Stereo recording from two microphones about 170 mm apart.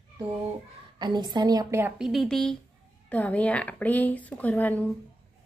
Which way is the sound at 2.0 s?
Centre (ahead or behind).